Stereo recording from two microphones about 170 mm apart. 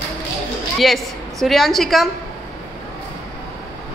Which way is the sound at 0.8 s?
Centre (ahead or behind).